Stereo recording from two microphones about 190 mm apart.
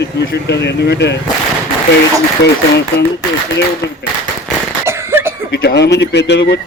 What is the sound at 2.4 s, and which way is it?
Speech, 60° left (ahead or behind).